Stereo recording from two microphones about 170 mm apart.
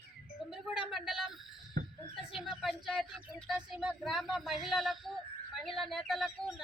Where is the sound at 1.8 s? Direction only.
55° right (ahead or behind).